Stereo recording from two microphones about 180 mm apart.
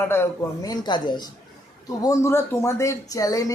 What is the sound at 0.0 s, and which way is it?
Speech, 15° left (ahead or behind).